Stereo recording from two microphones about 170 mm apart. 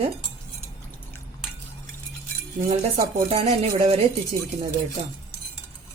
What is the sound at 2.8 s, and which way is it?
Speech, 40° right (ahead or behind).